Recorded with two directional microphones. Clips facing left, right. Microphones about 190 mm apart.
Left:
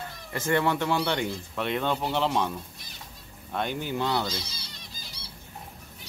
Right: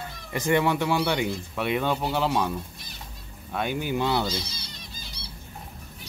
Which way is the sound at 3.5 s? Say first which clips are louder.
Right 2 dB; 10° right (ahead or behind).